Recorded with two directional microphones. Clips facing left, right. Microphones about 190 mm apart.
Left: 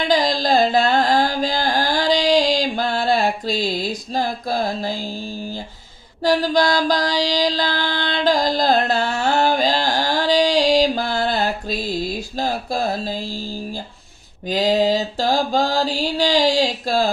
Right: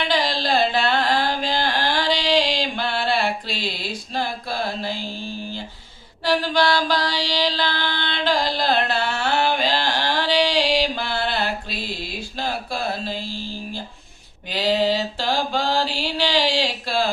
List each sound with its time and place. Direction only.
0.1 s mantra: 40° left (ahead or behind)
6.2 s mantra: 40° left (ahead or behind)
14.4 s mantra: 45° left (ahead or behind)